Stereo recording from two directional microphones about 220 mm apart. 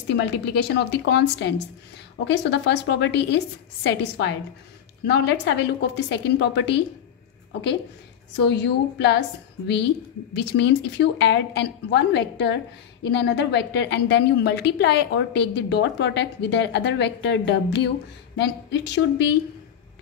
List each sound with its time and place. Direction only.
0.1 s a woman's voice: 50° left (ahead or behind)
8.4 s a woman's voice: 50° left (ahead or behind)
10.3 s a woman's voice: 50° left (ahead or behind)